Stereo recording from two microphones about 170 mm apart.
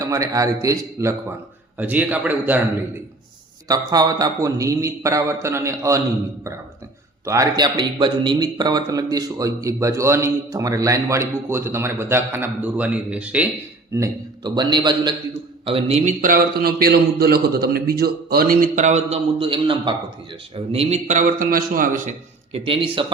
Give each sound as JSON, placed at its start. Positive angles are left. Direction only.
{"t": 0.0, "sound": "a man's voice", "side_deg": -20}
{"t": 3.7, "sound": "a man's voice", "side_deg": -20}
{"t": 7.3, "sound": "a man's voice", "side_deg": -20}
{"t": 13.9, "sound": "a man's voice", "side_deg": -20}
{"t": 20.7, "sound": "a man's voice", "side_deg": -40}
{"t": 22.5, "sound": "speech", "side_deg": -30}